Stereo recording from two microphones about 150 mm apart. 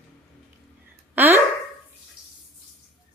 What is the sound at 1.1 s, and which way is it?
Speech, 15° right (ahead or behind).